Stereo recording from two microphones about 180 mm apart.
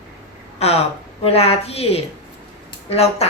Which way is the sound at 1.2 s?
35° left (ahead or behind).